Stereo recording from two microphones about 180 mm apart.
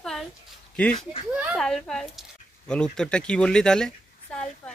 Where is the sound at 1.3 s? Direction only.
5° right (ahead or behind).